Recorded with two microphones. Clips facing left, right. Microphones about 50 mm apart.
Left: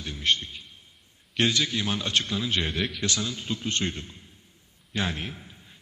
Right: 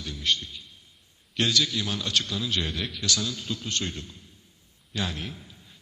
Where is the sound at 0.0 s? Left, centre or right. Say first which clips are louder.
Left 2 dB; left.